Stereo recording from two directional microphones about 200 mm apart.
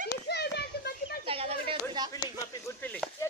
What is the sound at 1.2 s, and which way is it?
Chatter, 30° right (ahead or behind).